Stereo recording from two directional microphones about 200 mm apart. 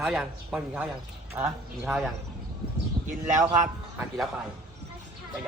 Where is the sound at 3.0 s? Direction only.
25° right (ahead or behind).